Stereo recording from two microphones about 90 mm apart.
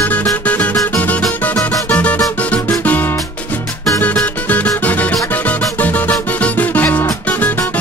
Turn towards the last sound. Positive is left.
turn(degrees=20)  # may be behind; listen again after turning